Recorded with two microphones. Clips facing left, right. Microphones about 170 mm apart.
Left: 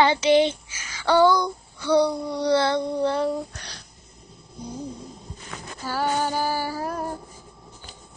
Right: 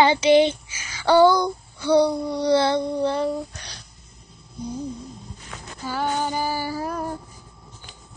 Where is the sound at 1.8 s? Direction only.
15° right (ahead or behind).